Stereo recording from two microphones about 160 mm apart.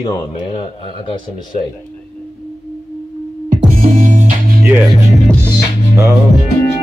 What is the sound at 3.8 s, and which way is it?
Music, 55° right (ahead or behind).